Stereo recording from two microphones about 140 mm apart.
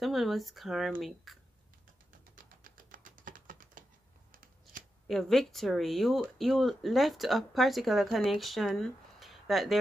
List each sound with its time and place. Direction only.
0.0 s speech: centre (ahead or behind)
2.3 s typing: 75° right (ahead or behind)
4.3 s scissors: 85° right
5.0 s speech: centre (ahead or behind)